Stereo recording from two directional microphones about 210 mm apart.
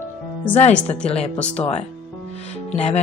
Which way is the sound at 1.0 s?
30° left (ahead or behind).